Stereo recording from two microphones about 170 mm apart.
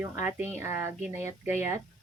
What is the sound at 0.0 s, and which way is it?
Speech, 10° right (ahead or behind).